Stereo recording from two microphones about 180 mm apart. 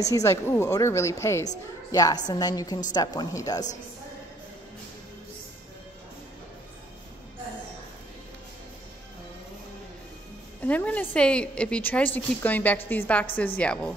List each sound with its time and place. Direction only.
0.0 s a woman's voice: 15° left (ahead or behind)
10.6 s a woman's voice: 10° left (ahead or behind)